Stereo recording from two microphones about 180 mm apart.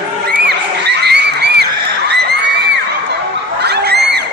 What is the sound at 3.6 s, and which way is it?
Crowd, 65° right (ahead or behind).